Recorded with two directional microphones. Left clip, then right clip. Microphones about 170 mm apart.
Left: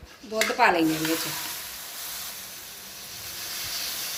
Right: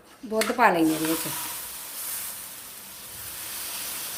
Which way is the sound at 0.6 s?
45° right (ahead or behind).